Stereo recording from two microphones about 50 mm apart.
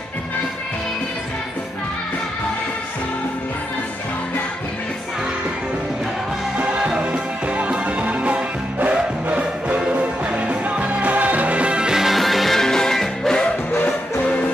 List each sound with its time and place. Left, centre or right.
6.6 s music: centre
11.9 s music: centre